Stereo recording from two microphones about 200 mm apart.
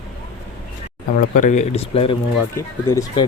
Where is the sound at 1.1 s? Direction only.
40° left (ahead or behind).